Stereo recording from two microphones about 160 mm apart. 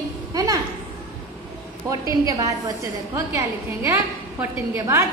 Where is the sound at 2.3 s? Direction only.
20° right (ahead or behind).